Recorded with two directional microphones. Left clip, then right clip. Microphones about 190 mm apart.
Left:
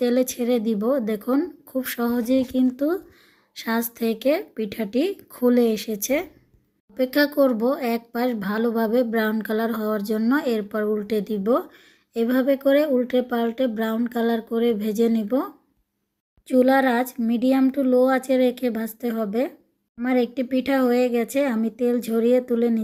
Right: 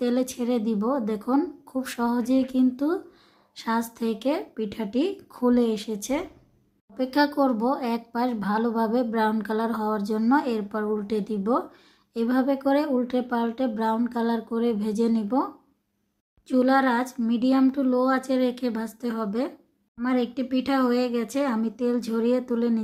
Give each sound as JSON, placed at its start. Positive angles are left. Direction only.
{"t": 0.0, "sound": "speech", "side_deg": 15}
{"t": 16.5, "sound": "speech", "side_deg": 15}